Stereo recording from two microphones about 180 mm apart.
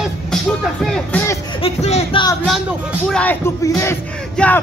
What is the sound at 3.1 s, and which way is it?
Speech, 10° left (ahead or behind).